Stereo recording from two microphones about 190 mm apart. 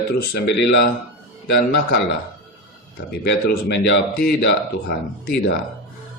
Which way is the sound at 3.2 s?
55° left (ahead or behind).